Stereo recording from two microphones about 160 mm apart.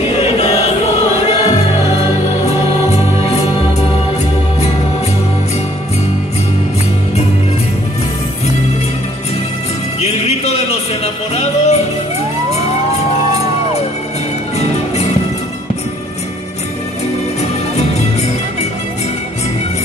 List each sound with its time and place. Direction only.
0.1 s choir: 40° left (ahead or behind)
1.2 s music: 40° left (ahead or behind)
9.9 s music: 40° left (ahead or behind)
17.4 s music: 40° left (ahead or behind)